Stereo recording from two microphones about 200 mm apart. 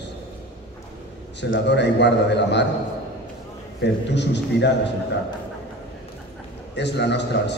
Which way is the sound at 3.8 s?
60° left (ahead or behind).